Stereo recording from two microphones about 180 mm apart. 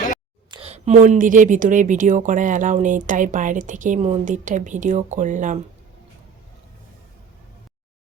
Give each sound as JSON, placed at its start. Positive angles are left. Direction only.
{"t": 0.5, "sound": "a woman's voice", "side_deg": -35}